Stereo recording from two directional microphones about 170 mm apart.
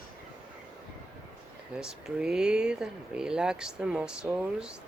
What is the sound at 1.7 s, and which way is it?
Speech, 5° right (ahead or behind).